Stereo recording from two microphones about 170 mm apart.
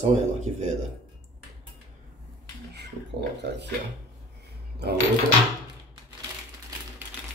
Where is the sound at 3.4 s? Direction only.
90° right.